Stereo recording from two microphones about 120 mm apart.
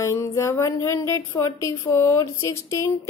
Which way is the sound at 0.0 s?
25° left (ahead or behind).